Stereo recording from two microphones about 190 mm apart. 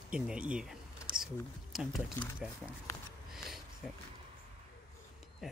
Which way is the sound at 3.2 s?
Centre (ahead or behind).